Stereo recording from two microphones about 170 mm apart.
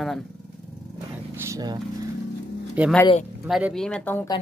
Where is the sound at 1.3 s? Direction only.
15° right (ahead or behind).